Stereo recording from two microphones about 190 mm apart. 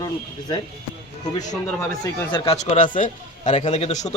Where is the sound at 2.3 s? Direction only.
25° left (ahead or behind).